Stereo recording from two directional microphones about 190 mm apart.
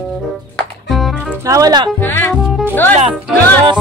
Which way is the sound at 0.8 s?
Centre (ahead or behind).